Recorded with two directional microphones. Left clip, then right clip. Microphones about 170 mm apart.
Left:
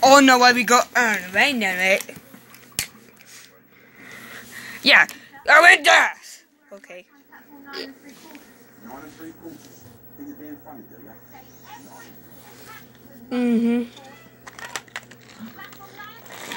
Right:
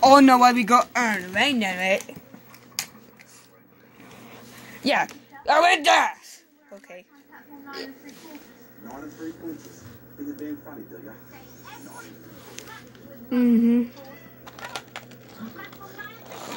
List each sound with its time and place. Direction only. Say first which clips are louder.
0.0 s speech: left 1 dB; 15° right (ahead or behind)
4.8 s a woman's voice: left 8 dB; centre (ahead or behind)
13.3 s a woman's voice: right 1 dB; 40° left (ahead or behind)
14.4 s a sound: left 2 dB; 20° left (ahead or behind)
16.3 s splash: left 4 dB; 20° left (ahead or behind)